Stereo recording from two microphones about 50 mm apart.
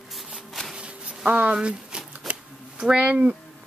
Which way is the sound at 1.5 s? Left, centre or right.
Right.